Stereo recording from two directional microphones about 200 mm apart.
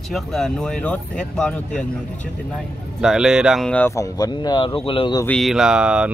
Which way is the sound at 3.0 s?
5° right (ahead or behind).